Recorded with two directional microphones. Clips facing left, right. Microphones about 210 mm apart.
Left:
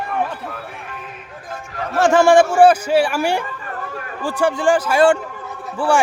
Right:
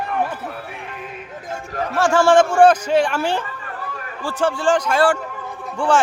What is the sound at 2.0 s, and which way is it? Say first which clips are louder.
A man's voice: left 2 dB; 20° left (ahead or behind).